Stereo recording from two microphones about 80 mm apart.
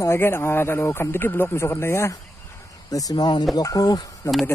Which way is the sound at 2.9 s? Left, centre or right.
Left.